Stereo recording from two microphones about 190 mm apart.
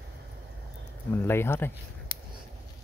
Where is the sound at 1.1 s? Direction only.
10° left (ahead or behind).